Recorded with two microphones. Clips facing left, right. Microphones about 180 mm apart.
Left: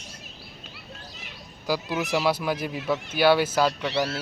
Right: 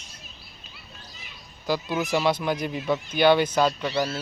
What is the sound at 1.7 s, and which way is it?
Speech, 5° left (ahead or behind).